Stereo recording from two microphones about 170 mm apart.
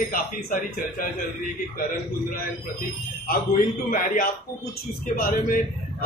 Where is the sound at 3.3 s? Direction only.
55° left (ahead or behind).